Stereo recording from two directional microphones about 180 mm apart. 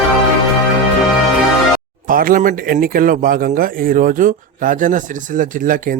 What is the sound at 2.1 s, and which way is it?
A man's voice, 50° right (ahead or behind).